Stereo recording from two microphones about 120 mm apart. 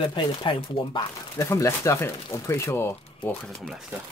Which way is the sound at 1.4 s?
25° left (ahead or behind).